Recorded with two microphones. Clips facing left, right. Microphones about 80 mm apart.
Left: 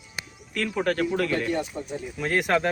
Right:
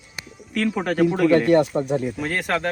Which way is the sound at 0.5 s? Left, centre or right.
Centre.